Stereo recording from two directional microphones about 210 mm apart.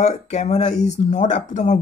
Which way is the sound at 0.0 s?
30° left (ahead or behind).